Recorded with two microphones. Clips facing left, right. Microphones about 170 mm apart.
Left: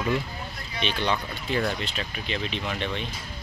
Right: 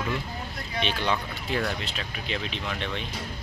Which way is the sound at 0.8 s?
5° right (ahead or behind).